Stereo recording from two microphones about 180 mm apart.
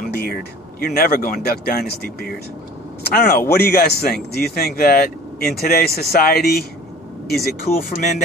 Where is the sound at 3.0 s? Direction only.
60° left (ahead or behind).